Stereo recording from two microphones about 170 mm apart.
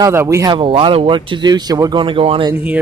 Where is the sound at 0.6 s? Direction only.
30° right (ahead or behind).